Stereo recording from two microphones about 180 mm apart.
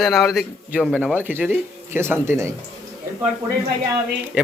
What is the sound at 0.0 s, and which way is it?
A man's voice, centre (ahead or behind).